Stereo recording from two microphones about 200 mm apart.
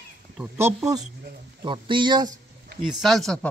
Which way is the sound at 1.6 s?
25° right (ahead or behind).